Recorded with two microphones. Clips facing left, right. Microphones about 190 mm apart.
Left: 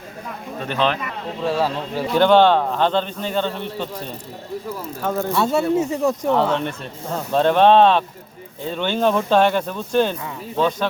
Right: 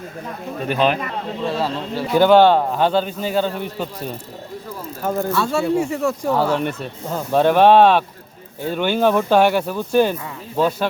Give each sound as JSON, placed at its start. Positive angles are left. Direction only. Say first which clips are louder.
{"t": 0.7, "sound": "speech", "louder": "right 3 dB", "side_deg": -10}
{"t": 1.5, "sound": "a man's voice", "louder": "left 1 dB", "side_deg": 10}
{"t": 2.1, "sound": "speech", "louder": "right 2 dB", "side_deg": -5}
{"t": 5.0, "sound": "speech", "louder": "right 1 dB", "side_deg": -10}
{"t": 5.3, "sound": "speech", "louder": "left 2 dB", "side_deg": 20}
{"t": 6.2, "sound": "speech", "louder": "even", "side_deg": -5}